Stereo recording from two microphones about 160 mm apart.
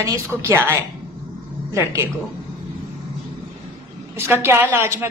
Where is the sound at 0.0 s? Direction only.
15° right (ahead or behind).